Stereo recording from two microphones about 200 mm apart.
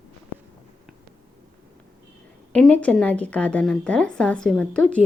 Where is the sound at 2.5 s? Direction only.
5° left (ahead or behind).